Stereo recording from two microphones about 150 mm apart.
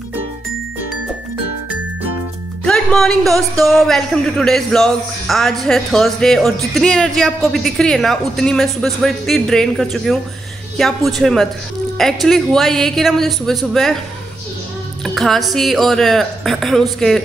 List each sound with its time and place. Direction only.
2.6 s speech: 5° left (ahead or behind)
15.0 s speech: centre (ahead or behind)